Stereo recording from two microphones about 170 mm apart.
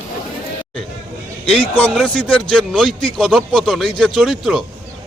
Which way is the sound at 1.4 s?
35° left (ahead or behind).